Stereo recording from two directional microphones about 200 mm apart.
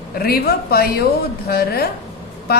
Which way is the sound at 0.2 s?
50° left (ahead or behind).